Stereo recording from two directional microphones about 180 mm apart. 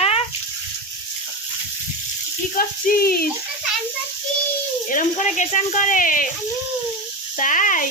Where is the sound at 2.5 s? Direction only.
55° left (ahead or behind).